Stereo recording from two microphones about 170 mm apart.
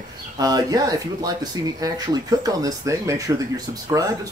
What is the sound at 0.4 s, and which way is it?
Speech, 20° right (ahead or behind).